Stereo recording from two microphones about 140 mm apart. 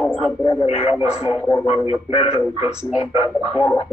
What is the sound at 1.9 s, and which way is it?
A man's voice, 45° left (ahead or behind).